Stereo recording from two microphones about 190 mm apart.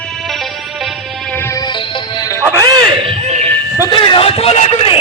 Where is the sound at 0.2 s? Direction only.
Centre (ahead or behind); by 2.4 s 20° left (ahead or behind).